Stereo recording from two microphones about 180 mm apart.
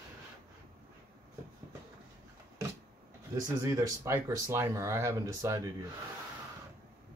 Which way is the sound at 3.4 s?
15° right (ahead or behind).